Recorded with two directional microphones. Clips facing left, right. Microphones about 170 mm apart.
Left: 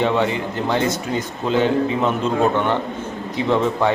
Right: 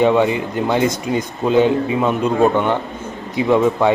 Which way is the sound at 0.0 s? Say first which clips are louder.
Right 5 dB; 15° right (ahead or behind).